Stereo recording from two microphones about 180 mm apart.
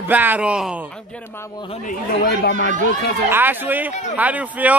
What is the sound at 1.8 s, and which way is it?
Speech, 60° left (ahead or behind).